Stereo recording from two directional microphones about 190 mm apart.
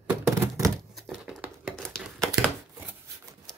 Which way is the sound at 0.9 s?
Centre (ahead or behind).